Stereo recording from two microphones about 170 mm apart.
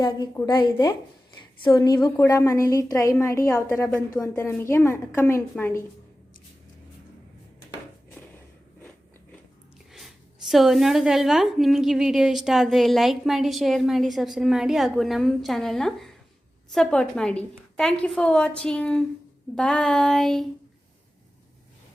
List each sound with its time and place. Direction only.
0.0 s a woman's voice: 25° left (ahead or behind)
9.9 s a woman's voice: centre (ahead or behind)